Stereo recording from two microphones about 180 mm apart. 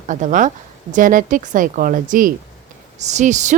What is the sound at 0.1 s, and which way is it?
A woman's voice, 45° right (ahead or behind).